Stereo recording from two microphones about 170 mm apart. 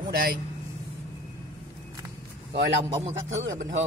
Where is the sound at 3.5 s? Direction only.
45° right (ahead or behind).